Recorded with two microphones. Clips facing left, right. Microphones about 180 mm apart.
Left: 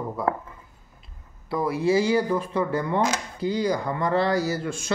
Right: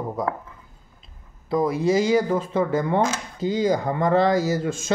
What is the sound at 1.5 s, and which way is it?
Speech, 20° right (ahead or behind).